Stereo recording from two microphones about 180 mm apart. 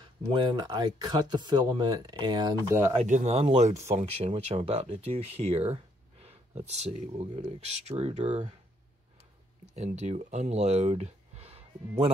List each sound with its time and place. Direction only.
0.0 s speech: 25° right (ahead or behind)
3.0 s speech: 40° right (ahead or behind)
9.8 s speech: 40° right (ahead or behind)